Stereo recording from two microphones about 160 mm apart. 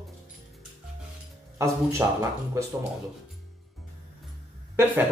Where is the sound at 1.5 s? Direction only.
20° right (ahead or behind).